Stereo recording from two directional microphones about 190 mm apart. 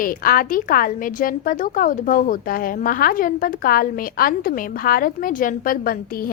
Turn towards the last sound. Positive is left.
turn(degrees=50)  # may be behind; listen again after turning